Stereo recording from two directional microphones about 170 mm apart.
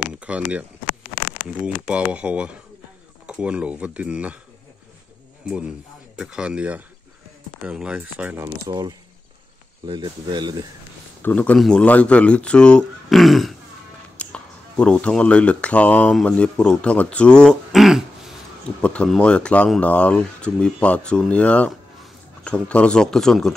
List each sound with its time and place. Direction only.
0.1 s speech: 5° right (ahead or behind)
5.4 s speech: 5° right (ahead or behind)
8.6 s speech: 20° right (ahead or behind)
11.2 s speech: 10° left (ahead or behind)